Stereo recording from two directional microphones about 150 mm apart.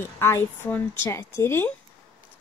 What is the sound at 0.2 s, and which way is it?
Speech, 15° left (ahead or behind).